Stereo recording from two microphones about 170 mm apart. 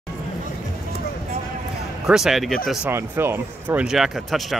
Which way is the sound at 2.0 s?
5° right (ahead or behind).